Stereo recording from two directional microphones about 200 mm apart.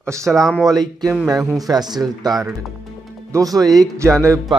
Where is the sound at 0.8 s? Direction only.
20° right (ahead or behind).